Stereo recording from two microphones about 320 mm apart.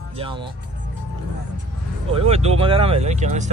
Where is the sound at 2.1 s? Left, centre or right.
Centre.